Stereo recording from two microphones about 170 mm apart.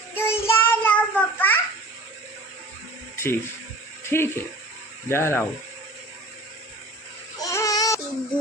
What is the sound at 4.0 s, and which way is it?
Speech, 15° left (ahead or behind).